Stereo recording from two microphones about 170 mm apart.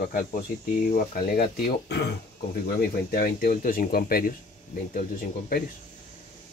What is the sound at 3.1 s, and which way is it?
Speech, 60° left (ahead or behind).